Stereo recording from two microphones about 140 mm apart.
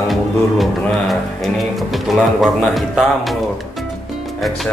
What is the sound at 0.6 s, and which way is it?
Speech, centre (ahead or behind).